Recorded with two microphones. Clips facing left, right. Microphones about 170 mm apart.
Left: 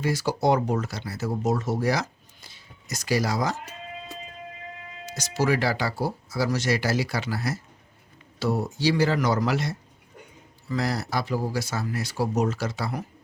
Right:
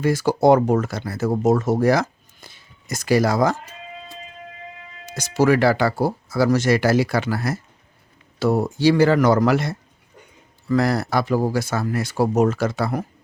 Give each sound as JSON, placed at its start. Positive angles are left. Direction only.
{"t": 0.0, "sound": "speech", "side_deg": -50}
{"t": 5.0, "sound": "speech", "side_deg": -50}